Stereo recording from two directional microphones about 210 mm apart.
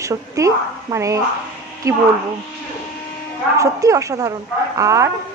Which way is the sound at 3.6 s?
15° right (ahead or behind).